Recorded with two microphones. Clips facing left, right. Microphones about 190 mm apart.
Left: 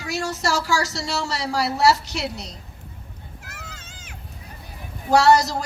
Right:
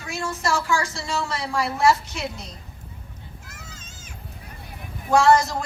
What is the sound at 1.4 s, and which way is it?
Speech, 40° left (ahead or behind).